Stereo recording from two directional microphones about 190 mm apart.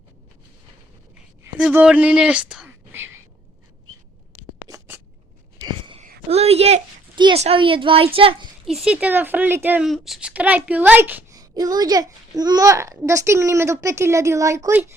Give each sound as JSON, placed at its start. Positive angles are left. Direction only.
{"t": 1.5, "sound": "speech", "side_deg": -5}
{"t": 5.5, "sound": "whispering", "side_deg": -25}
{"t": 6.0, "sound": "a woman's voice", "side_deg": -35}
{"t": 8.6, "sound": "speech", "side_deg": -5}